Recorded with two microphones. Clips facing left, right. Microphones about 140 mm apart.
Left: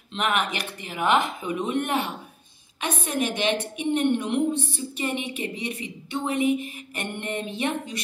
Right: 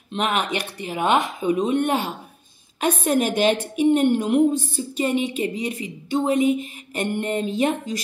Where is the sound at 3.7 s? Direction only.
40° right (ahead or behind).